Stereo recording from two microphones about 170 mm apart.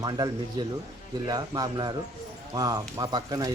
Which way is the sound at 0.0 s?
20° right (ahead or behind).